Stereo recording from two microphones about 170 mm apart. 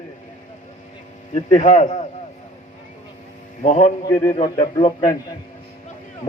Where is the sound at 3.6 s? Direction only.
40° left (ahead or behind).